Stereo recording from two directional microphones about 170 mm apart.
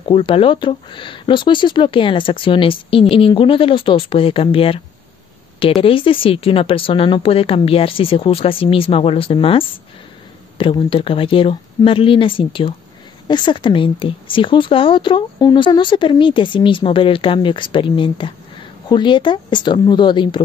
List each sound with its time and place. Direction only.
0.1 s a woman's voice: 30° left (ahead or behind)